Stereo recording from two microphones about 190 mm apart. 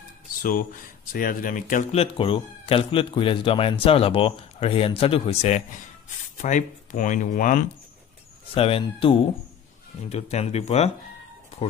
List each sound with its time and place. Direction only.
0.4 s speech: 45° left (ahead or behind)
8.5 s speech: 30° left (ahead or behind)